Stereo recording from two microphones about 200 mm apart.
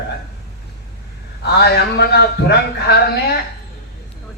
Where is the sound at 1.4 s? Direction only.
55° left (ahead or behind).